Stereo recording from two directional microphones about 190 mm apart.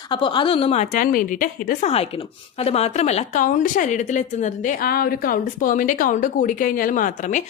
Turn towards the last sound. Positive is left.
turn(degrees=40)  # may be behind; listen again after turning